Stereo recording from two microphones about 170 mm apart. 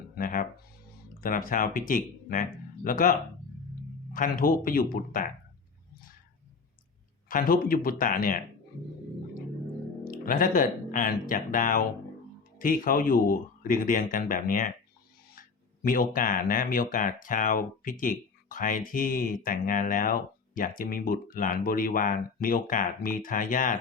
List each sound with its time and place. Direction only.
0.2 s music: 55° left (ahead or behind)
1.2 s speech: 55° left (ahead or behind)
7.3 s speech: 55° left (ahead or behind)
10.0 s speech: 55° left (ahead or behind)